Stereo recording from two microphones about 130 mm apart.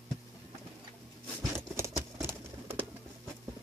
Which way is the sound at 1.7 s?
20° right (ahead or behind).